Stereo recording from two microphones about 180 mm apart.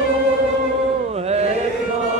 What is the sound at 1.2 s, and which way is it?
Chant, 35° right (ahead or behind).